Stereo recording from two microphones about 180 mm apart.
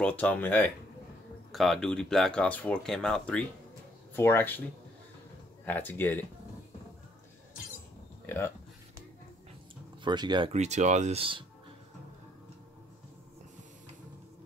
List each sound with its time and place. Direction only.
0.0 s speech: 10° left (ahead or behind)
5.7 s speech: 10° left (ahead or behind)
8.3 s speech: 15° left (ahead or behind)
10.0 s speech: 25° right (ahead or behind)
10.5 s speech: 40° right (ahead or behind)